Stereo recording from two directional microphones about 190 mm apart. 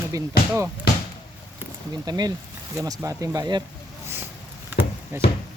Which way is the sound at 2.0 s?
20° right (ahead or behind).